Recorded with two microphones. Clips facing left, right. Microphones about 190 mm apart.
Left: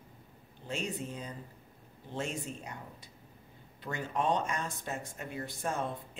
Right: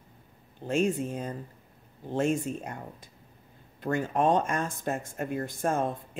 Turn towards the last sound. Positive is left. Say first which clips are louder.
# right 7 dB
turn(degrees=-50)  # may be behind; listen again after turning